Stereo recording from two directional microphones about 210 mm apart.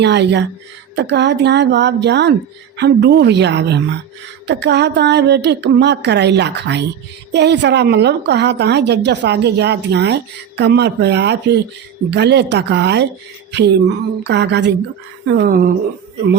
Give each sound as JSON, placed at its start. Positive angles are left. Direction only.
{"t": 0.0, "sound": "a woman's voice", "side_deg": -55}